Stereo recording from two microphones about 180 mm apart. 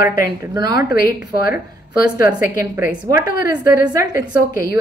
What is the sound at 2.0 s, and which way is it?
Speech, 55° left (ahead or behind).